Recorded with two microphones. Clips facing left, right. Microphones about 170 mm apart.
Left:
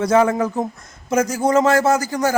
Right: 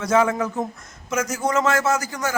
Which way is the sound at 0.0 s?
35° left (ahead or behind).